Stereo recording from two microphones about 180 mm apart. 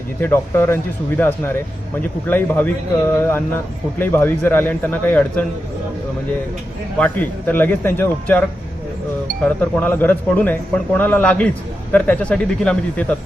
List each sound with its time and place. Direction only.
0.2 s speech: 10° left (ahead or behind)
7.0 s speech: 10° left (ahead or behind)